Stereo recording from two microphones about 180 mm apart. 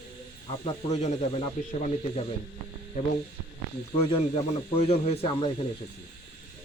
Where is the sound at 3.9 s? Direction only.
30° left (ahead or behind).